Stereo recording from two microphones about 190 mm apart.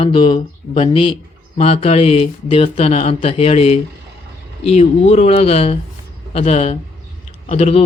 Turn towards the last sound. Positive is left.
turn(degrees=35)  # may be behind; listen again after turning